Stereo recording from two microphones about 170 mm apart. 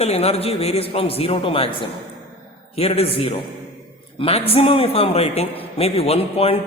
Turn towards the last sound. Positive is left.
turn(degrees=35)  # may be behind; listen again after turning